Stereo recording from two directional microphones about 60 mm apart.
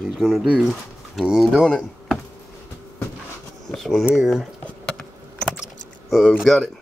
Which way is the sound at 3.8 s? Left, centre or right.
Centre.